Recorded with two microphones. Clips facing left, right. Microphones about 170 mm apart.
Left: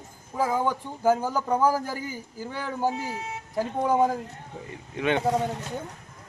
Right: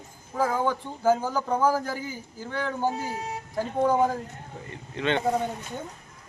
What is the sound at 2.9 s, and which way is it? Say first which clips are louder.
Speech: right 1 dB; 40° right (ahead or behind).